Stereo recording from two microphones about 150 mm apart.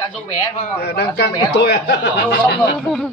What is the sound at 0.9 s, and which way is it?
A man's voice, 90° left.